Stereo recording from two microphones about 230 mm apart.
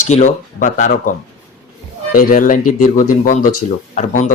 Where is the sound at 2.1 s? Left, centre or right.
Left.